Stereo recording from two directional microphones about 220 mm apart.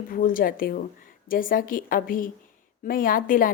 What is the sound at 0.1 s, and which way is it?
Speech, 40° left (ahead or behind).